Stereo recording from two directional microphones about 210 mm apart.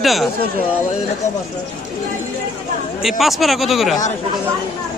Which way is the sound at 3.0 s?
Centre (ahead or behind).